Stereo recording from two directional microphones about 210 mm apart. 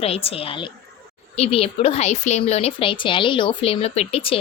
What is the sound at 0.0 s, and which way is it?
Speech, 30° left (ahead or behind).